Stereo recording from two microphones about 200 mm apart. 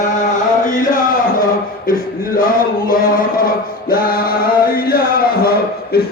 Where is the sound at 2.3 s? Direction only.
45° left (ahead or behind).